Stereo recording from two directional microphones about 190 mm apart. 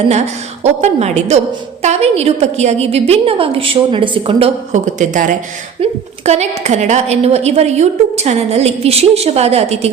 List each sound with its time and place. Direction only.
0.6 s a woman's voice: 35° right (ahead or behind)